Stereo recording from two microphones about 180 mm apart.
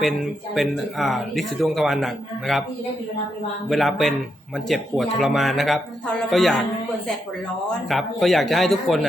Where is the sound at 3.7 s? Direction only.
Centre (ahead or behind).